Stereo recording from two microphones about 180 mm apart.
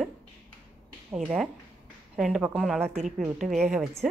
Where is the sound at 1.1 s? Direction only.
Centre (ahead or behind).